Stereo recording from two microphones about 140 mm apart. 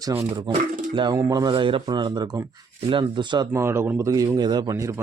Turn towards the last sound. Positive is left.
turn(degrees=-20)  # may be behind; listen again after turning